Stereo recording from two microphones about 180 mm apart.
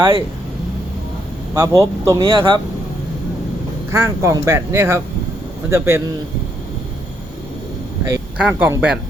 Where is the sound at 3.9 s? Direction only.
15° right (ahead or behind).